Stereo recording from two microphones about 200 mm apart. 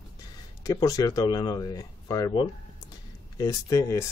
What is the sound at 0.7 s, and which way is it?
Speech, 15° left (ahead or behind).